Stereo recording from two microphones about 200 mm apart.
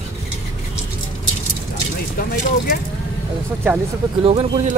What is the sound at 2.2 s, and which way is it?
Speech, 45° left (ahead or behind).